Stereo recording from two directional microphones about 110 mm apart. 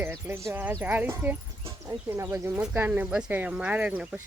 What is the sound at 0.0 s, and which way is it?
Speech, 20° right (ahead or behind).